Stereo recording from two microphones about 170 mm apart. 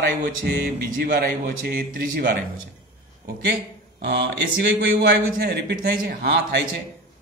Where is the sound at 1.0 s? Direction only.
60° right (ahead or behind).